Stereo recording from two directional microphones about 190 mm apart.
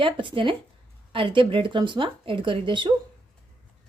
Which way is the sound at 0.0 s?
25° right (ahead or behind).